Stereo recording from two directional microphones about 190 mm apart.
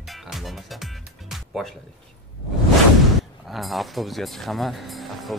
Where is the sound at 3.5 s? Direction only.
Centre (ahead or behind).